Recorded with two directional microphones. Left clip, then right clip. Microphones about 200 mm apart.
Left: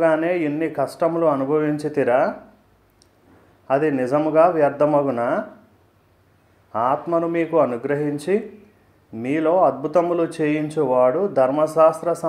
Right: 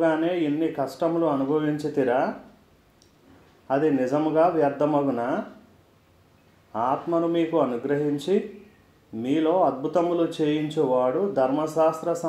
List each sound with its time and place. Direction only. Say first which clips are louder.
0.0 s speech: left 4 dB; 20° left (ahead or behind)
3.6 s speech: left 3 dB; 20° left (ahead or behind)
6.7 s speech: left 4 dB; 20° left (ahead or behind)